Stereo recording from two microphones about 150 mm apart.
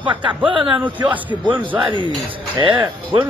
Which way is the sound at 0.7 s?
10° right (ahead or behind).